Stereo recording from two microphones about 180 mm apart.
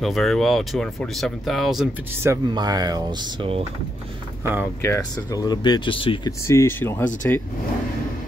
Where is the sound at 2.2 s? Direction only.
20° right (ahead or behind).